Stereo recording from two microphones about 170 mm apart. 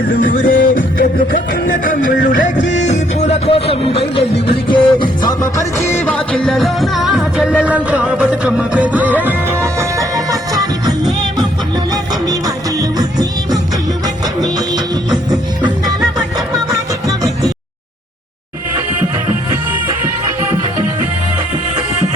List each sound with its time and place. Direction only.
0.1 s music: 50° left (ahead or behind); by 10.9 s 20° right (ahead or behind)
13.0 s music: 25° right (ahead or behind)